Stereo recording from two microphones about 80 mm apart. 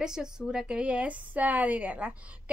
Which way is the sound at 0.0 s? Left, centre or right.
Centre.